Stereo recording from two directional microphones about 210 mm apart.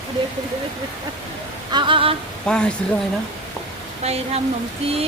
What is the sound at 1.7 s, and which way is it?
Speech, 25° right (ahead or behind).